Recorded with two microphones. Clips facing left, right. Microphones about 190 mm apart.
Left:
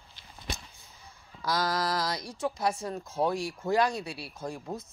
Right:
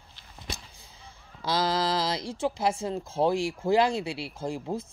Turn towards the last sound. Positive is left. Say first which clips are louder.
# right 5 dB
turn(degrees=-25)  # may be behind; listen again after turning